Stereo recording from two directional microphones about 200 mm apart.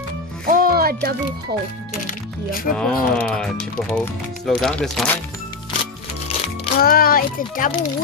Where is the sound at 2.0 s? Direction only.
45° left (ahead or behind).